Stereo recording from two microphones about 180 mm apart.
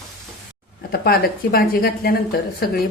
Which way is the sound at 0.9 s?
60° left (ahead or behind).